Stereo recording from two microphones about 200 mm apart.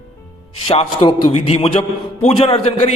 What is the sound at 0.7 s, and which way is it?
A man's voice, 30° left (ahead or behind).